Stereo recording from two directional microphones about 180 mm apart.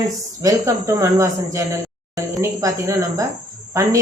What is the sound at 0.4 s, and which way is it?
Speech, 20° right (ahead or behind).